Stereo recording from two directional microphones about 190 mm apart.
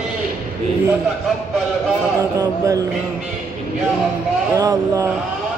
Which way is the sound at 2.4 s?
20° right (ahead or behind).